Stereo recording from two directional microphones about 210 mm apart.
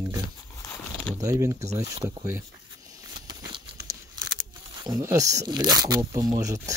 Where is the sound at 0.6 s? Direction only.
15° left (ahead or behind).